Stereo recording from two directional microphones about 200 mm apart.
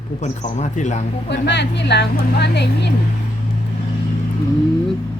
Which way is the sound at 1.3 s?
60° left (ahead or behind).